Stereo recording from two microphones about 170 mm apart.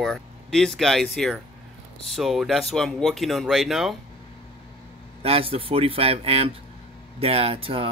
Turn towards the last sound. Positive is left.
turn(degrees=-35)  # may be behind; listen again after turning